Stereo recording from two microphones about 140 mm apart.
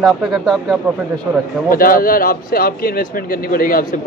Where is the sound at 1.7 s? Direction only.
90° left.